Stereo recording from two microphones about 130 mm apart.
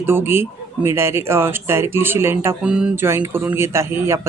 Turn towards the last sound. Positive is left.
turn(degrees=-20)  # may be behind; listen again after turning